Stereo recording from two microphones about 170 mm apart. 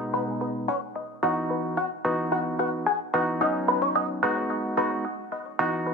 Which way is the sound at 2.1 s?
Centre (ahead or behind).